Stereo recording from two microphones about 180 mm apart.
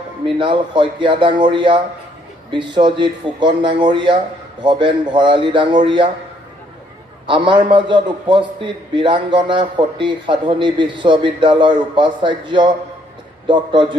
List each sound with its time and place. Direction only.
0.4 s a man's voice: 25° right (ahead or behind)
7.2 s a man's voice: 25° right (ahead or behind)